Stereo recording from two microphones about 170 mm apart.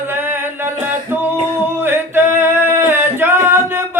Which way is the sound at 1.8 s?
15° right (ahead or behind).